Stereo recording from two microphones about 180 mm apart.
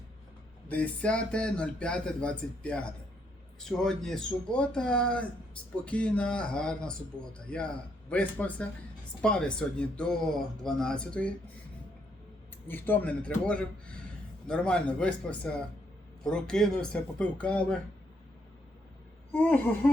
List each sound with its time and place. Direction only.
0.7 s speech: 5° left (ahead or behind)
12.6 s speech: 10° left (ahead or behind)
19.3 s speech: 10° left (ahead or behind)